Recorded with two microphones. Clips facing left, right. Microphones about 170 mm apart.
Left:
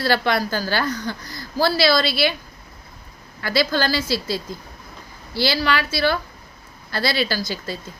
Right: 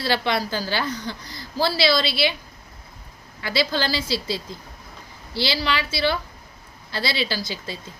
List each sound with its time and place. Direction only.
0.0 s a woman's voice: 50° left (ahead or behind)
3.4 s a woman's voice: 45° left (ahead or behind)